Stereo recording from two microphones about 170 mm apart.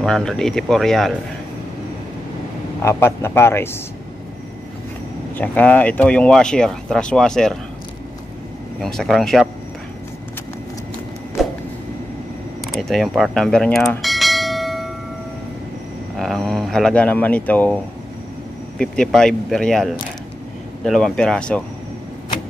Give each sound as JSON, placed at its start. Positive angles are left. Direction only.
{"t": 0.0, "sound": "speech", "side_deg": 5}
{"t": 2.8, "sound": "speech", "side_deg": 15}
{"t": 5.3, "sound": "speech", "side_deg": 10}
{"t": 8.8, "sound": "speech", "side_deg": 0}
{"t": 12.7, "sound": "bell", "side_deg": 0}
{"t": 16.2, "sound": "speech", "side_deg": 0}
{"t": 18.8, "sound": "speech", "side_deg": 5}